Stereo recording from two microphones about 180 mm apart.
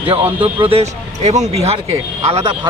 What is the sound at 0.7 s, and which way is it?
A man's voice, 35° right (ahead or behind).